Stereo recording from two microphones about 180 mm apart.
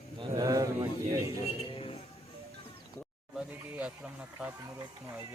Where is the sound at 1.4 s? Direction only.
35° left (ahead or behind).